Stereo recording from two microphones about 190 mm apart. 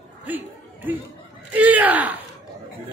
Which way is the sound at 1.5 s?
10° right (ahead or behind).